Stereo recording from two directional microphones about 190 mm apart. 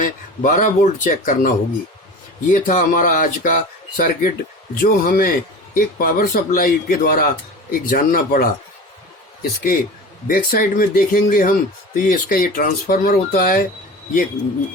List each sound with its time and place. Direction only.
0.0 s speech: 45° left (ahead or behind)